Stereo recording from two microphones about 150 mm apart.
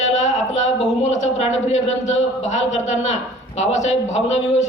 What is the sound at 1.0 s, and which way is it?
Speech, 50° left (ahead or behind).